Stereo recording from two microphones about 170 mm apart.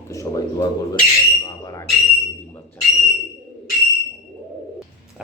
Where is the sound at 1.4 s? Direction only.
20° left (ahead or behind).